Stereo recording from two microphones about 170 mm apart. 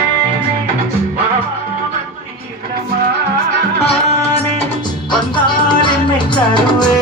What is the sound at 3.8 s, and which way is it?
Music, 35° left (ahead or behind).